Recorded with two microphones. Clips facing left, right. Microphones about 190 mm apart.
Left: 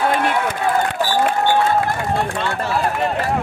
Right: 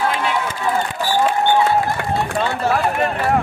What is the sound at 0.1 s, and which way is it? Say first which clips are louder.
Run: left 2 dB; 55° left (ahead or behind).